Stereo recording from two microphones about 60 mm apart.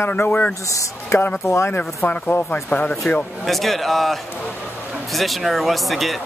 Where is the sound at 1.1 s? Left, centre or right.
Left.